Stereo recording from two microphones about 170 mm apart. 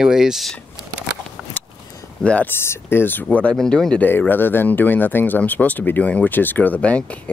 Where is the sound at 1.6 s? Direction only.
10° left (ahead or behind).